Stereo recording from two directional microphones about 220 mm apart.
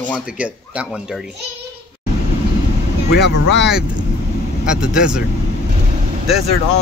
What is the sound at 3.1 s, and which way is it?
Speech, 50° left (ahead or behind).